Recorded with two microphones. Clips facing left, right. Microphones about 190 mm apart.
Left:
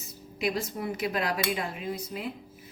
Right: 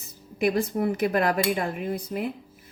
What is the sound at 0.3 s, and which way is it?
Speech, 55° right (ahead or behind).